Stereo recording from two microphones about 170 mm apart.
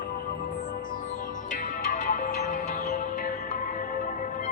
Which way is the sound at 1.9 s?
45° left (ahead or behind).